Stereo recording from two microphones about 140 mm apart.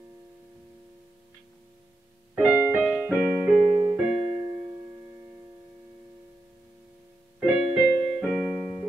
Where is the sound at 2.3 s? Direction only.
10° right (ahead or behind).